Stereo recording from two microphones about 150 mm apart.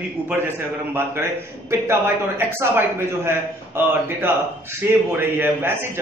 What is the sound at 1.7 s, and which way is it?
A man's voice, 15° right (ahead or behind).